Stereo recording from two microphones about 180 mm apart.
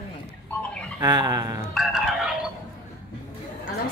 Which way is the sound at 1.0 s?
25° right (ahead or behind).